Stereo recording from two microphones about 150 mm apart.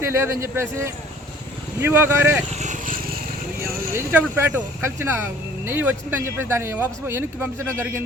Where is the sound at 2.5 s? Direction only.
55° right (ahead or behind).